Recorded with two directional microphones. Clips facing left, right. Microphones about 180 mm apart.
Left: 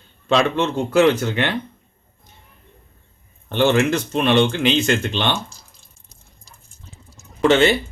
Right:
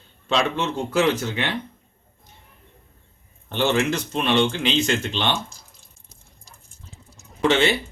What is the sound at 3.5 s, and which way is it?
Speech, 60° left (ahead or behind).